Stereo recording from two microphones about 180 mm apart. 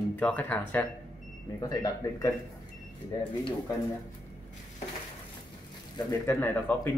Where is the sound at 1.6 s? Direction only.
20° left (ahead or behind).